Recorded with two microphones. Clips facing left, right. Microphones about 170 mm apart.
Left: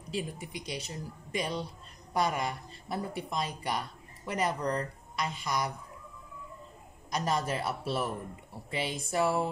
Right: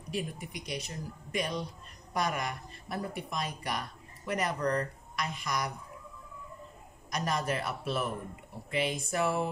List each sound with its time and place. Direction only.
0.1 s speech: 25° left (ahead or behind)
7.1 s speech: 25° left (ahead or behind)